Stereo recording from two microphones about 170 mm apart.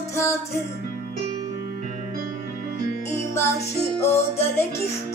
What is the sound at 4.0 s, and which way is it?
Music, 15° left (ahead or behind).